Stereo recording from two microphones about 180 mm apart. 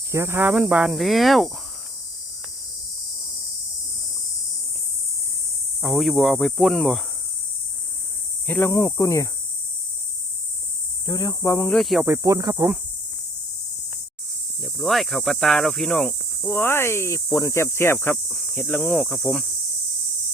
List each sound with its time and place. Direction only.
0.1 s speech: 15° right (ahead or behind)
5.8 s speech: centre (ahead or behind)
8.4 s speech: 10° left (ahead or behind)
11.0 s speech: 20° left (ahead or behind)
11.8 s speech: centre (ahead or behind)
12.0 s speech: 15° right (ahead or behind)
14.6 s speech: centre (ahead or behind)